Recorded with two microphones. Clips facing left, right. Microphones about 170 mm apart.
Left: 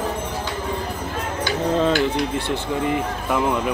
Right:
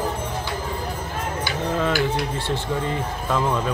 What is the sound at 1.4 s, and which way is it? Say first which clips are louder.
Speech: left 5 dB; 20° left (ahead or behind).